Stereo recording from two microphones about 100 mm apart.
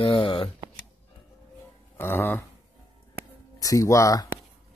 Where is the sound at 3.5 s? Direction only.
35° left (ahead or behind).